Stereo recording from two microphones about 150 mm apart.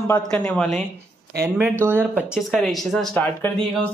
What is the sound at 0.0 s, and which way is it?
Speech, 15° left (ahead or behind).